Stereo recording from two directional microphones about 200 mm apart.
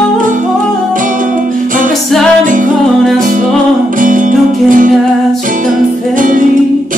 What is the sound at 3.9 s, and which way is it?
Music, 40° right (ahead or behind).